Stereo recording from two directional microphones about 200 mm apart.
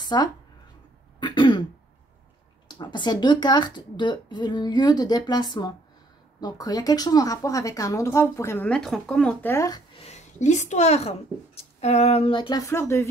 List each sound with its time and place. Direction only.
0.0 s speech: 20° left (ahead or behind)
1.2 s throat clearing: 20° left (ahead or behind)
2.7 s speech: 20° left (ahead or behind)
9.9 s a woman's voice: 35° left (ahead or behind); by 13.0 s 15° left (ahead or behind)